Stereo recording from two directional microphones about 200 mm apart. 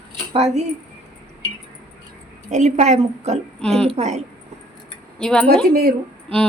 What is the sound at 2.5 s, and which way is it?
A woman's voice, 35° right (ahead or behind).